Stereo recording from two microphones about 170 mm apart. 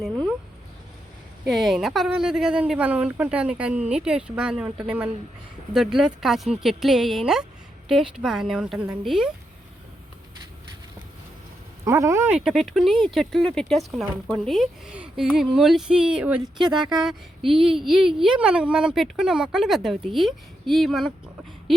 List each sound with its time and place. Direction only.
1.5 s a woman's voice: centre (ahead or behind)
11.9 s speech: 15° right (ahead or behind)
12.4 s a woman's voice: centre (ahead or behind)
16.6 s speech: 25° right (ahead or behind)
17.0 s a woman's voice: centre (ahead or behind)